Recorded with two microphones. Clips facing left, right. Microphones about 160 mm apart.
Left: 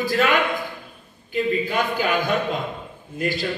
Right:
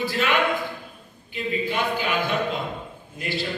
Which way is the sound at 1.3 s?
45° left (ahead or behind).